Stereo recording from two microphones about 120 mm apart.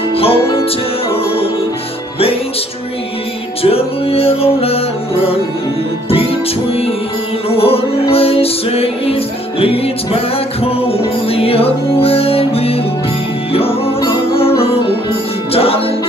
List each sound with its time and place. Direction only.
0.1 s music: 55° left (ahead or behind)
3.6 s music: 55° left (ahead or behind)
7.4 s music: 55° left (ahead or behind)